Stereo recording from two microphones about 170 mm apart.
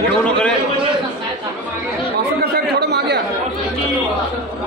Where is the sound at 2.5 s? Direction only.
75° right (ahead or behind).